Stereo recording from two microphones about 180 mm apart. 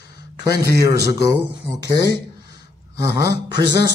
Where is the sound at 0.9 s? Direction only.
70° left (ahead or behind).